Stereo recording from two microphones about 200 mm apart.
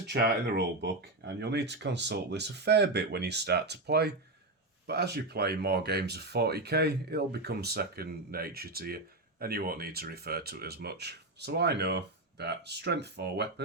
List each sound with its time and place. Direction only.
0.1 s speech: 55° right (ahead or behind)